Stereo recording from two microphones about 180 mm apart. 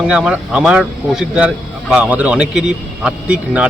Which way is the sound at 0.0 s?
5° right (ahead or behind).